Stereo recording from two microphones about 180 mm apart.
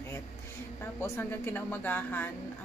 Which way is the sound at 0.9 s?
15° left (ahead or behind).